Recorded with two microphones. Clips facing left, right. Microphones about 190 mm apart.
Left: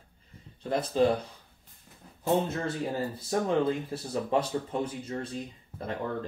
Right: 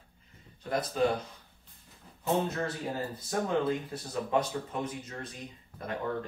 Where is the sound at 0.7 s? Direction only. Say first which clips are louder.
Left 4 dB; 30° left (ahead or behind).